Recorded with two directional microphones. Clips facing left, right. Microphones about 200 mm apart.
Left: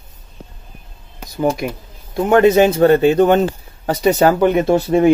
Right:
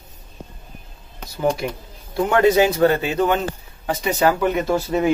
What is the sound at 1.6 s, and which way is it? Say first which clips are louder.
Speech: left 3 dB; 15° left (ahead or behind).